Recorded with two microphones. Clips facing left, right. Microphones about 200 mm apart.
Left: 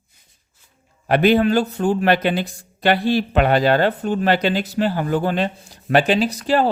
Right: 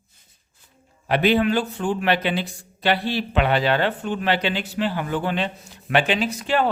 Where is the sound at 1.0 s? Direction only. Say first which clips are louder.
Left 4 dB; 45° left (ahead or behind).